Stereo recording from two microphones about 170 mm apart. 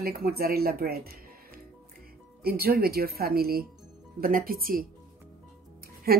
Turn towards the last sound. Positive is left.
turn(degrees=-65)  # may be behind; listen again after turning